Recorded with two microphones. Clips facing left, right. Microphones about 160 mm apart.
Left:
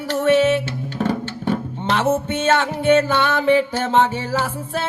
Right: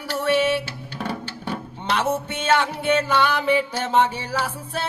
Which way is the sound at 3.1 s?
25° left (ahead or behind).